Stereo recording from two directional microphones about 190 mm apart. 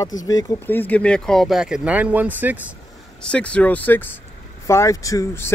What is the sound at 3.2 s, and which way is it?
Speech, 5° left (ahead or behind).